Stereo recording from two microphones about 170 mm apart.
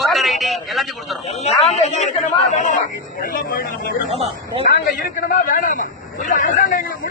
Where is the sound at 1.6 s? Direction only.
40° left (ahead or behind); by 3.7 s 60° left (ahead or behind).